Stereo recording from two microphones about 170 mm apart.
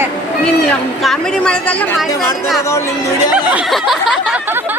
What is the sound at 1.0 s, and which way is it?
Speech, 5° left (ahead or behind).